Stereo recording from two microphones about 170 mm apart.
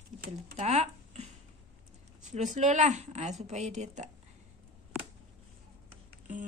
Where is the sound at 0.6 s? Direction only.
40° right (ahead or behind).